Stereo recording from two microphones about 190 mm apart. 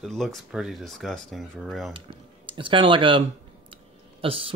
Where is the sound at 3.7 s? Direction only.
30° right (ahead or behind).